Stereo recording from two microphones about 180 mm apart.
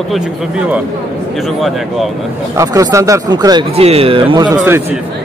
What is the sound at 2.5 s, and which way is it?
Speech, 20° right (ahead or behind).